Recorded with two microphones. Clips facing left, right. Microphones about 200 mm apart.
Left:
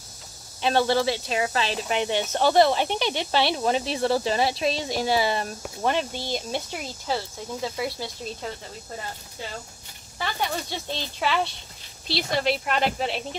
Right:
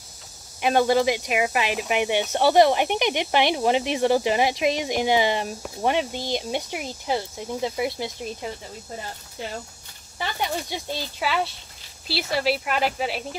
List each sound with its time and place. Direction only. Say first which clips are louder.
0.6 s speech: right 2 dB; 15° right (ahead or behind)
10.1 s speech: right 1 dB; 15° right (ahead or behind)